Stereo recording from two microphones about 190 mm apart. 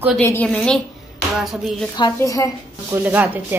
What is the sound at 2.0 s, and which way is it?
Speech, 20° left (ahead or behind).